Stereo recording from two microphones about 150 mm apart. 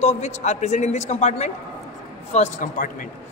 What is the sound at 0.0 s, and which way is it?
A man's voice, 45° left (ahead or behind).